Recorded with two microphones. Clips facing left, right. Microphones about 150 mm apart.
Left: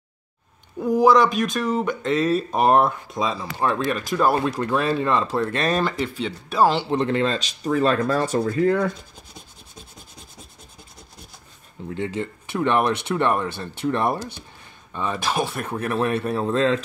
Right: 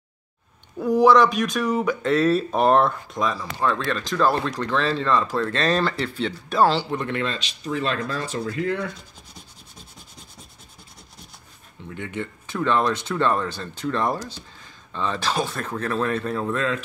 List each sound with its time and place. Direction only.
0.7 s speech: 5° left (ahead or behind)
3.2 s speech: 20° left (ahead or behind)
6.9 s speech: 30° left (ahead or behind)
11.8 s speech: 40° left (ahead or behind)
12.2 s speech: 20° left (ahead or behind)